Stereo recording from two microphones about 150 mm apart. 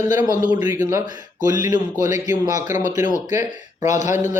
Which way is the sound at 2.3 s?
20° right (ahead or behind).